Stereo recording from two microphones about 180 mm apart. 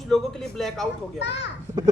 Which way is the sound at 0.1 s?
Centre (ahead or behind).